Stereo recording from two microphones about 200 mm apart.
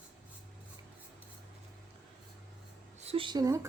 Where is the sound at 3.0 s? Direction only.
25° right (ahead or behind).